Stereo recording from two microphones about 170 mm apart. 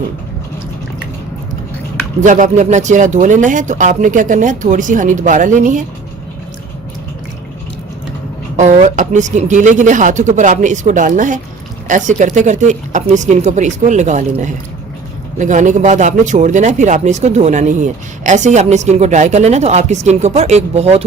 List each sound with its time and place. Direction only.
2.2 s speech: 45° right (ahead or behind)
8.5 s speech: 45° right (ahead or behind)